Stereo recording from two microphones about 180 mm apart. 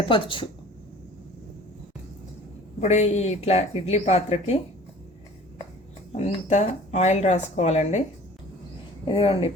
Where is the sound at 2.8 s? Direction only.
40° left (ahead or behind).